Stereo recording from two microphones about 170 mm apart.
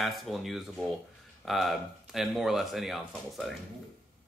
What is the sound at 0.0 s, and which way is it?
Speech, centre (ahead or behind).